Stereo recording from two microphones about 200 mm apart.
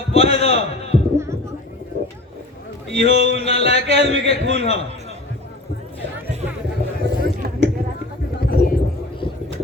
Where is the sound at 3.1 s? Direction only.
60° right (ahead or behind).